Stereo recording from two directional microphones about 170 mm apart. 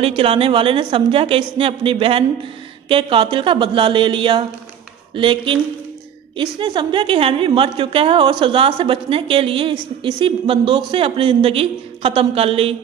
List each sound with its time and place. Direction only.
0.0 s a woman's voice: 35° right (ahead or behind)